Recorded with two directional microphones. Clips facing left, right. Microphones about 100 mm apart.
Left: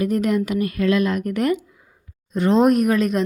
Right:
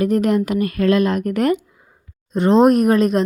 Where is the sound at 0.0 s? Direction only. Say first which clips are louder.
Right 3 dB; 40° right (ahead or behind).